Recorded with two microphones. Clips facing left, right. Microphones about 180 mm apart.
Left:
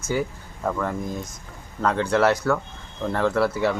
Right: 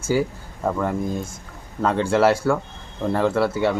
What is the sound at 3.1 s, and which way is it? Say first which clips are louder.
Speech: right 1 dB; centre (ahead or behind).